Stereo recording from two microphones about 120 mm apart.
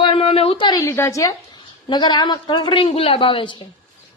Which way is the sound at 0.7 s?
25° left (ahead or behind).